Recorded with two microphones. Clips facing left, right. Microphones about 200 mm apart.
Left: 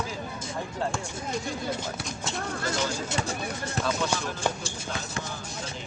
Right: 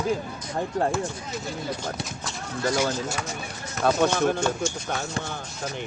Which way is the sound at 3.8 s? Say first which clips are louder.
Right 9 dB; 60° right (ahead or behind).